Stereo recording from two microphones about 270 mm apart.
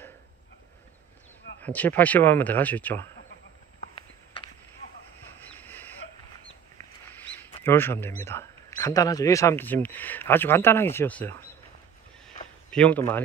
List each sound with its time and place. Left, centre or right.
1.6 s speech: centre
3.9 s horse: centre
5.6 s a sound: centre
7.6 s speech: centre
12.7 s speech: centre